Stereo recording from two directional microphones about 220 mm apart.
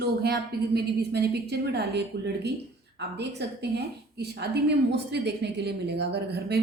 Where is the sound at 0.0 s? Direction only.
45° right (ahead or behind).